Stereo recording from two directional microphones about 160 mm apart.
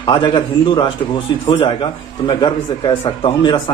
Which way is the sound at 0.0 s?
30° left (ahead or behind).